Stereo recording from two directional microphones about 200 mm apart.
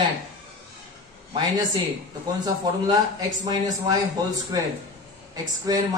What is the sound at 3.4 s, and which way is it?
A woman's voice, 20° right (ahead or behind).